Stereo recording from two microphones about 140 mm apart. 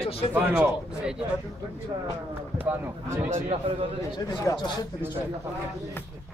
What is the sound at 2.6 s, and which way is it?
Speech, 20° right (ahead or behind).